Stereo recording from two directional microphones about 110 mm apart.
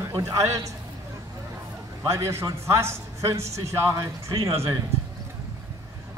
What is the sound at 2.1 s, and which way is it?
A man's voice, 25° right (ahead or behind).